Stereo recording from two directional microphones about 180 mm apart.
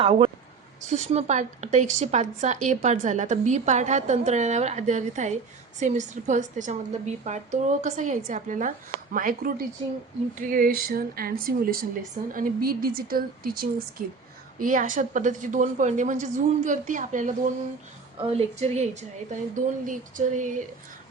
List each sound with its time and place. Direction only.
0.0 s a woman's voice: 30° right (ahead or behind)